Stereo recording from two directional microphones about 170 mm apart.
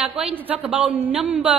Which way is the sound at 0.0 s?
5° right (ahead or behind).